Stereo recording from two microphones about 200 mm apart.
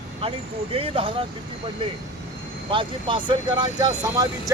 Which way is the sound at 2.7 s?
25° right (ahead or behind).